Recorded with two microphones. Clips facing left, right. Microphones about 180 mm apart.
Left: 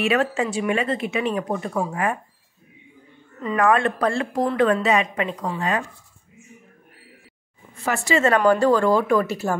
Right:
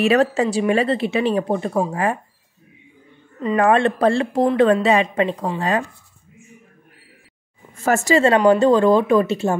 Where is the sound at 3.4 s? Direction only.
30° right (ahead or behind).